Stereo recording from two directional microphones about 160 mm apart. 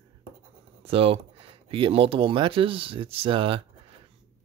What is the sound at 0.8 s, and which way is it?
Speech, 35° right (ahead or behind).